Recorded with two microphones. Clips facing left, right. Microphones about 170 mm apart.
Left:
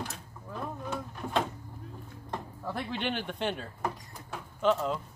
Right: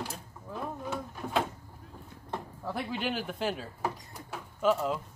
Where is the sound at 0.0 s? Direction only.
5° right (ahead or behind).